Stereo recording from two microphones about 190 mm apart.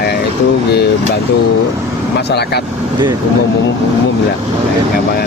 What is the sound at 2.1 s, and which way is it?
Speech, 60° left (ahead or behind).